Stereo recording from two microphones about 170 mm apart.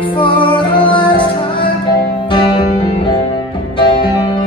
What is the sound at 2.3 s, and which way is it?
Music, 25° left (ahead or behind).